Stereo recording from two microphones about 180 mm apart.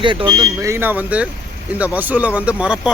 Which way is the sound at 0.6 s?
15° right (ahead or behind).